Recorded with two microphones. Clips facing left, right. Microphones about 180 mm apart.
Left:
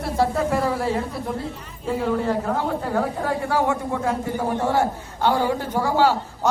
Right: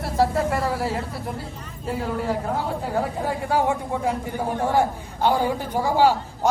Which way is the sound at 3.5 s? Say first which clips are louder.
Right 2 dB; 15° right (ahead or behind).